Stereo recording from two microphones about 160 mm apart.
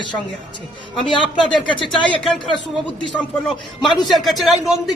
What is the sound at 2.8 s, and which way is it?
A man's voice, 10° left (ahead or behind).